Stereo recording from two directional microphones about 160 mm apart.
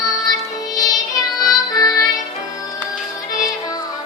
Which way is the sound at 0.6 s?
25° left (ahead or behind).